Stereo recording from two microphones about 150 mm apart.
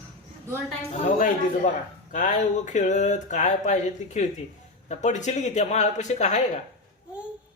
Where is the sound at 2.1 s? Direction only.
60° left (ahead or behind).